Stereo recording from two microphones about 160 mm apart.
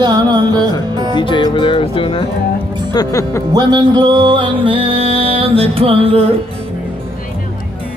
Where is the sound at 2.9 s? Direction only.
20° left (ahead or behind).